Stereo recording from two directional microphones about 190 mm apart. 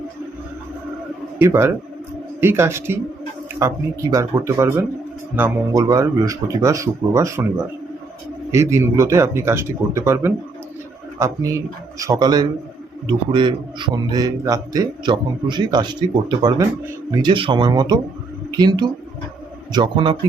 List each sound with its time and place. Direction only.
1.4 s speech: 15° right (ahead or behind)
4.1 s speech: 15° right (ahead or behind)
8.5 s a man's voice: 15° right (ahead or behind)